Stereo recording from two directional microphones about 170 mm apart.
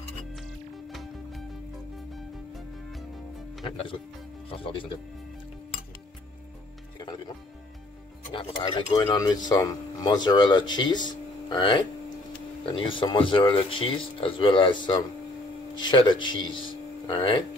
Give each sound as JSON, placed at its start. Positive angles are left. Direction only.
{"t": 2.5, "sound": "music", "side_deg": 0}
{"t": 3.6, "sound": "speech", "side_deg": 30}
{"t": 8.3, "sound": "speech", "side_deg": 25}